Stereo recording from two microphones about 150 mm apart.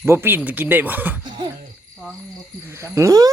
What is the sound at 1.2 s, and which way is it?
Cough, 30° right (ahead or behind).